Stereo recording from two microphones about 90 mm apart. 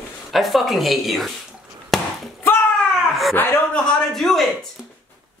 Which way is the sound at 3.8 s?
5° left (ahead or behind).